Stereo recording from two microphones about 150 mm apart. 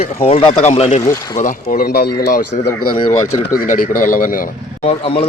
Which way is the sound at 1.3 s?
60° left (ahead or behind).